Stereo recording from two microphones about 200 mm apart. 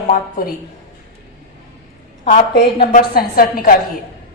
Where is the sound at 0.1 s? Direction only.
45° left (ahead or behind).